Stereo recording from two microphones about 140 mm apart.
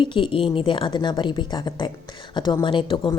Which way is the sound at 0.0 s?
40° left (ahead or behind).